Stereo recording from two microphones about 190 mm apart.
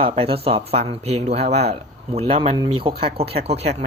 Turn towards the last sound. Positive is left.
turn(degrees=-35)  # may be behind; listen again after turning